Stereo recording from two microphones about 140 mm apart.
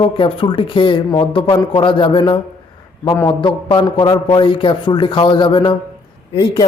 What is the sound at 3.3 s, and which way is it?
A man's voice, 35° left (ahead or behind).